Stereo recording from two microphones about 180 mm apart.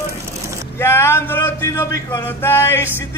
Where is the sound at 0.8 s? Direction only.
15° left (ahead or behind).